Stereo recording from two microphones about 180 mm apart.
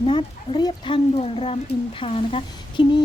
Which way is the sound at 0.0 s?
30° left (ahead or behind).